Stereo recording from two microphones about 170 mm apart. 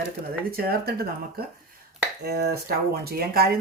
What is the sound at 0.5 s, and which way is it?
Speech, 65° right (ahead or behind).